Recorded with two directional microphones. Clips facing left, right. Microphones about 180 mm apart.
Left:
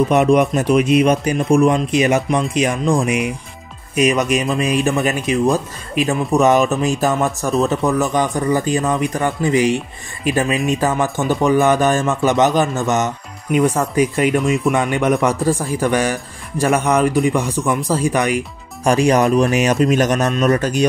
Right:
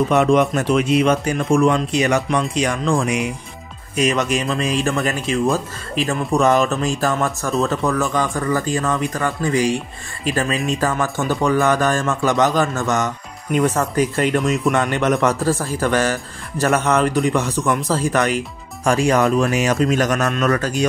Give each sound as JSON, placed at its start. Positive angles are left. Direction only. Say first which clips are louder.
{"t": 0.1, "sound": "speech", "louder": "left 2 dB", "side_deg": 15}